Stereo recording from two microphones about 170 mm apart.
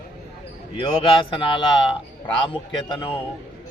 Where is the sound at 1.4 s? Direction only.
30° left (ahead or behind).